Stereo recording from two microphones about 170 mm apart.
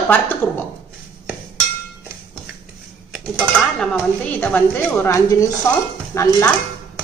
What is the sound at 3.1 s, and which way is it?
A woman's voice, centre (ahead or behind).